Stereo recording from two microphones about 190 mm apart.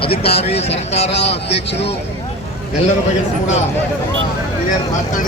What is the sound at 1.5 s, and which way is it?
Speech, 65° left (ahead or behind).